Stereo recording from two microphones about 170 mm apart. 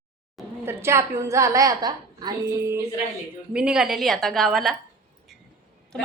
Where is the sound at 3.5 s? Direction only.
5° right (ahead or behind).